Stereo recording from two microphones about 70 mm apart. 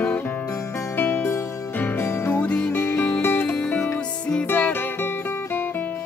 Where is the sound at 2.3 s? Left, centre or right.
Centre.